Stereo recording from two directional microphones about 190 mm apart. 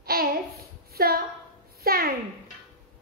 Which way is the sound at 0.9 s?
55° right (ahead or behind).